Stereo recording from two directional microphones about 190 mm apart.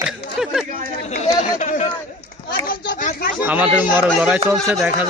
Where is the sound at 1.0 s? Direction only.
35° left (ahead or behind).